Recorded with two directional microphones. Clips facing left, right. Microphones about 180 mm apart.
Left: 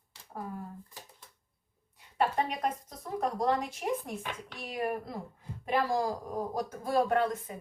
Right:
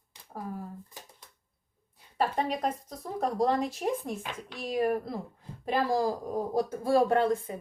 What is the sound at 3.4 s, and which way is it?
Speech, 30° right (ahead or behind).